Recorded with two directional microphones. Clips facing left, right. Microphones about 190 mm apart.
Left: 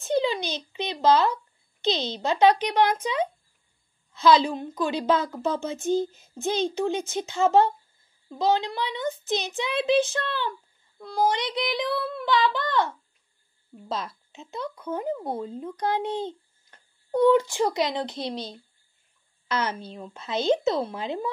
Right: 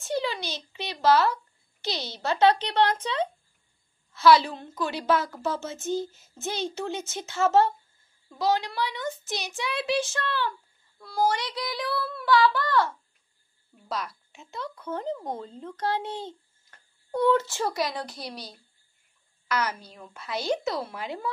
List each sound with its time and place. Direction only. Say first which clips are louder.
0.0 s a child's voice: left 5 dB; 20° left (ahead or behind)